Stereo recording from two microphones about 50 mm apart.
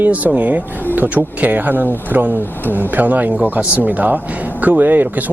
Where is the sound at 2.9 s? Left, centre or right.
Right.